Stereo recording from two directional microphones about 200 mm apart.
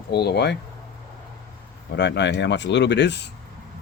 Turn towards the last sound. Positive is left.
turn(degrees=60)  # may be behind; listen again after turning